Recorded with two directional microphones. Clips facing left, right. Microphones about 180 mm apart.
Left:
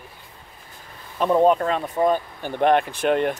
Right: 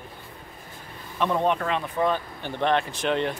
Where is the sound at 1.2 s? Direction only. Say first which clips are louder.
Left 6 dB; 40° left (ahead or behind).